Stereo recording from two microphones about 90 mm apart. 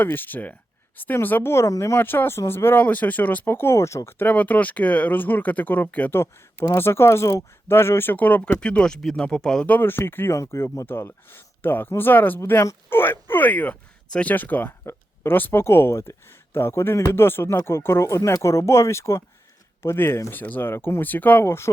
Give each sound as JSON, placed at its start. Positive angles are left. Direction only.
{"t": 0.0, "sound": "speech", "side_deg": 20}
{"t": 2.0, "sound": "speech", "side_deg": 20}
{"t": 4.3, "sound": "speech", "side_deg": 15}
{"t": 9.6, "sound": "speech", "side_deg": 20}
{"t": 20.3, "sound": "speech", "side_deg": 20}
{"t": 21.4, "sound": "speech", "side_deg": 30}